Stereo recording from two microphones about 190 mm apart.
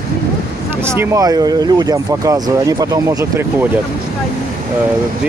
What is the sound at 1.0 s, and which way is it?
Speech, 20° right (ahead or behind).